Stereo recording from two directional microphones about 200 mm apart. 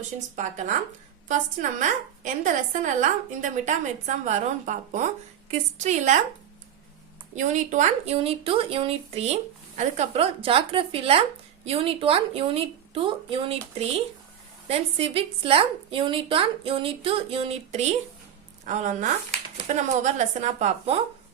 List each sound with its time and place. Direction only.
0.3 s a woman's voice: 35° right (ahead or behind)
1.8 s a woman's voice: 40° right (ahead or behind)
7.3 s a woman's voice: 40° right (ahead or behind)